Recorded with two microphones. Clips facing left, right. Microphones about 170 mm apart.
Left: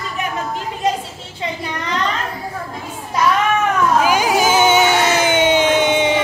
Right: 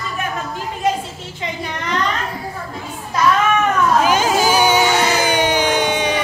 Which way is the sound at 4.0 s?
10° left (ahead or behind).